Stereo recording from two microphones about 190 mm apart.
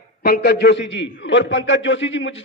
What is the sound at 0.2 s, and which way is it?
A man's voice, 60° left (ahead or behind).